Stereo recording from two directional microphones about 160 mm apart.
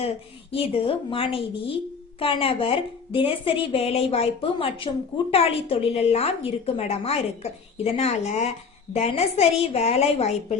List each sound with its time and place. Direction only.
0.5 s a woman's voice: 35° left (ahead or behind)